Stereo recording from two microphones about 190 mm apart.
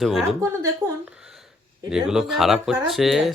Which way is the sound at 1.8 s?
5° right (ahead or behind).